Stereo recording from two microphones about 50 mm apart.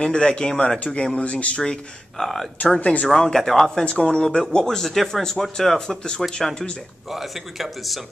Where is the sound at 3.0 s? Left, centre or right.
Centre.